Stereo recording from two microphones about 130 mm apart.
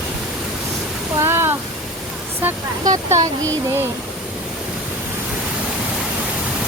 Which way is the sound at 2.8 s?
30° right (ahead or behind).